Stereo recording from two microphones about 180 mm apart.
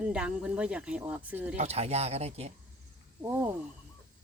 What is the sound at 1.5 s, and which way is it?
Speech, 35° right (ahead or behind).